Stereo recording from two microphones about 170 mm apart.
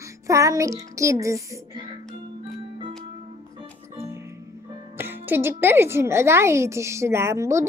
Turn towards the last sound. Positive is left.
turn(degrees=-15)  # may be behind; listen again after turning